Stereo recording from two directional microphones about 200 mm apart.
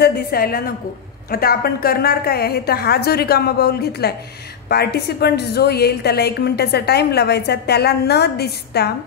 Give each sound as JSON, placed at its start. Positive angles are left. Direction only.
{"t": 0.0, "sound": "a woman's voice", "side_deg": 50}